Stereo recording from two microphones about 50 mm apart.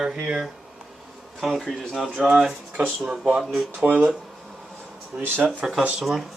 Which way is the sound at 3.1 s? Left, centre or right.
Centre.